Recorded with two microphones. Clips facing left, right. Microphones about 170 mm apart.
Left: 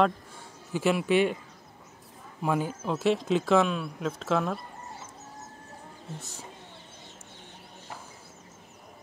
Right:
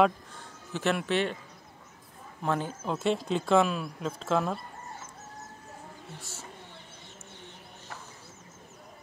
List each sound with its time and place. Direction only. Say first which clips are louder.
0.7 s speech: left 4 dB; 10° left (ahead or behind)
2.4 s speech: left 2 dB; 10° left (ahead or behind)
6.1 s speech: left 3 dB; 20° left (ahead or behind)